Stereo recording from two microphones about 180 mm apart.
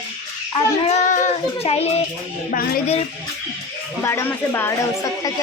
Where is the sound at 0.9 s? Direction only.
40° left (ahead or behind).